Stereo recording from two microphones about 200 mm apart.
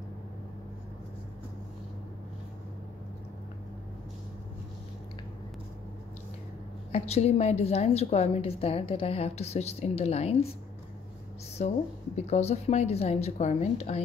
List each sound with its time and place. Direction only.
6.9 s a woman's voice: 30° left (ahead or behind)
11.6 s a woman's voice: 35° left (ahead or behind)